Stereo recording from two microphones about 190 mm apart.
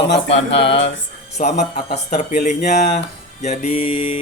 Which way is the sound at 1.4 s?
35° left (ahead or behind).